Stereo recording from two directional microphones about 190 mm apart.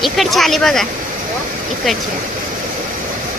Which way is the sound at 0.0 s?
Centre (ahead or behind).